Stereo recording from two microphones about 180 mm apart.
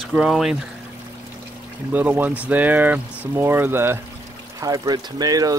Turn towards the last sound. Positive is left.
turn(degrees=-20)  # may be behind; listen again after turning